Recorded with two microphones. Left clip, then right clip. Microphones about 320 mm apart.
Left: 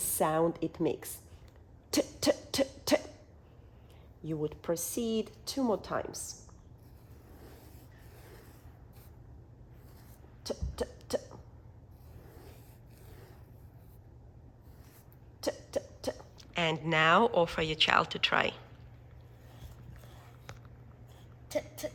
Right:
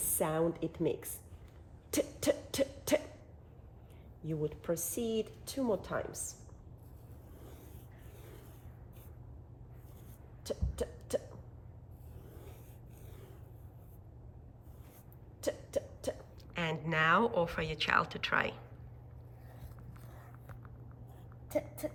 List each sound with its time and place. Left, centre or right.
0.0 s speech: left
1.9 s cough: left
4.2 s speech: left
10.4 s cough: left
15.4 s cough: left
16.5 s speech: centre
21.5 s a sound: centre